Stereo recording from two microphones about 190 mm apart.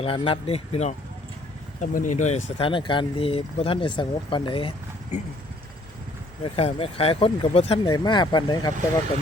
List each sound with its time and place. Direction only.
0.0 s speech: 30° left (ahead or behind)
6.4 s speech: 30° left (ahead or behind)
7.9 s speech: 20° left (ahead or behind)